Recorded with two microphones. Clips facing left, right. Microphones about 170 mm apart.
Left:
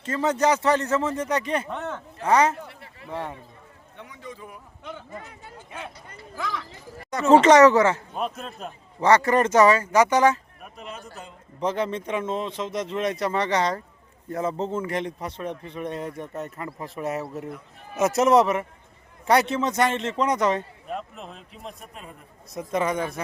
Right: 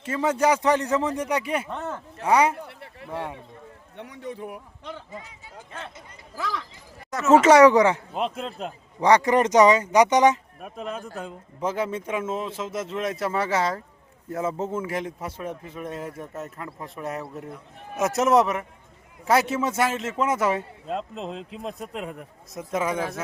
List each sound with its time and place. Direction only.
0.0 s a man's voice: 10° right (ahead or behind)
3.9 s speech: 65° right (ahead or behind)
4.8 s speech: centre (ahead or behind)
5.1 s speech: 55° left (ahead or behind)
6.3 s a man's voice: centre (ahead or behind); by 8.7 s 25° right (ahead or behind)
9.0 s a man's voice: 15° right (ahead or behind)
10.6 s speech: 50° right (ahead or behind)
11.6 s speech: 5° right (ahead or behind)
20.8 s speech: 25° right (ahead or behind)
21.9 s a man's voice: 90° right
22.5 s speech: 5° right (ahead or behind)